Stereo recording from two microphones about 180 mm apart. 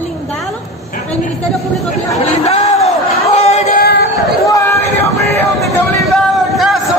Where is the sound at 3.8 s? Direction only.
65° left (ahead or behind).